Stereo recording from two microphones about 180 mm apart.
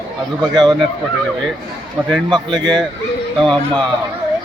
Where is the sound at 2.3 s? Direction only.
25° right (ahead or behind).